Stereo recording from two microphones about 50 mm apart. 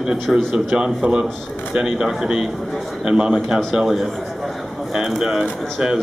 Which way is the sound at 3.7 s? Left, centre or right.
Centre.